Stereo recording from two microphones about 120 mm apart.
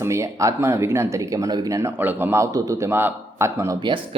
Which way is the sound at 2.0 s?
15° right (ahead or behind).